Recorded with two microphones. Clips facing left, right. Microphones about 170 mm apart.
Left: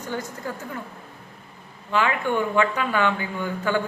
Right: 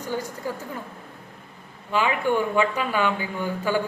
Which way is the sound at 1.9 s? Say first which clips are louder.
Right 1 dB; 15° right (ahead or behind).